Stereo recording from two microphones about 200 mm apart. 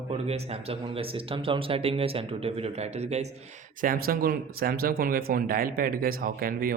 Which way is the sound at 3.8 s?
45° right (ahead or behind).